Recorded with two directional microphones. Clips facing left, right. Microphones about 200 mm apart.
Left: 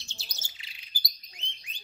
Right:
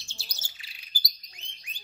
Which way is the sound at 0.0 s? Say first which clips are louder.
Even; 20° left (ahead or behind).